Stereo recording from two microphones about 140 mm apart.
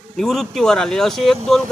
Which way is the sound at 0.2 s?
5° left (ahead or behind).